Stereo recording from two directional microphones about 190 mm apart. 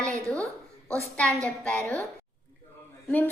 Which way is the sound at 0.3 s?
5° left (ahead or behind).